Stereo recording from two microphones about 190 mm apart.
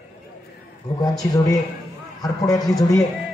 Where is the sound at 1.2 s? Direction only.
15° left (ahead or behind).